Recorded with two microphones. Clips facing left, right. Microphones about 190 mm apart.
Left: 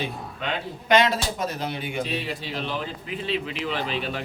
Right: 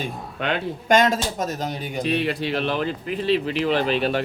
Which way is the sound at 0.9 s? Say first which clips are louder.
Right 2 dB; 45° right (ahead or behind).